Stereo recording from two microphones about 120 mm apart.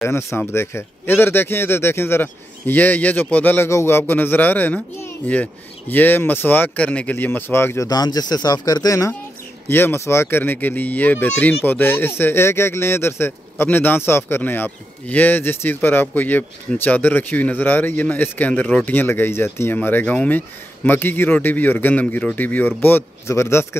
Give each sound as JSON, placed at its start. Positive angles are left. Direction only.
{"t": 0.0, "sound": "speech", "side_deg": 20}
{"t": 7.9, "sound": "speech", "side_deg": 35}
{"t": 9.7, "sound": "speech", "side_deg": 20}